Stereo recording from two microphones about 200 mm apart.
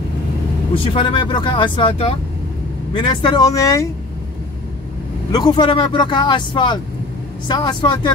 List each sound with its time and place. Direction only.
0.7 s speech: 25° left (ahead or behind)
5.3 s speech: 20° left (ahead or behind)